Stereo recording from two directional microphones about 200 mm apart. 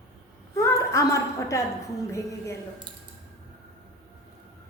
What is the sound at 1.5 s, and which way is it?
A woman's voice, 15° left (ahead or behind).